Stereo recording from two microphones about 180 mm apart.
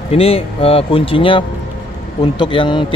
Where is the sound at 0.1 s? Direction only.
30° left (ahead or behind).